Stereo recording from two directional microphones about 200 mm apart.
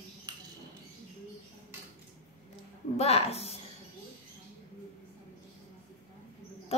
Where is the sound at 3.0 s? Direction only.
30° left (ahead or behind).